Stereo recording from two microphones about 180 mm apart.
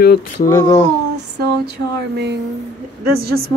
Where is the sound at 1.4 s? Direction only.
65° right (ahead or behind).